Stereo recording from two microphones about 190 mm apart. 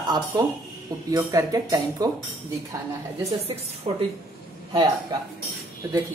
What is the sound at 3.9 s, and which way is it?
Speech, 30° right (ahead or behind).